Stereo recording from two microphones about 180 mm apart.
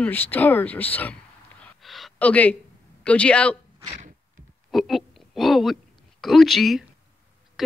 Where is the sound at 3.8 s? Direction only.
35° right (ahead or behind).